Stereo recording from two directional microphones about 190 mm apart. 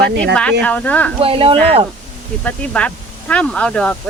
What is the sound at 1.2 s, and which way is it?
Speech, 30° right (ahead or behind).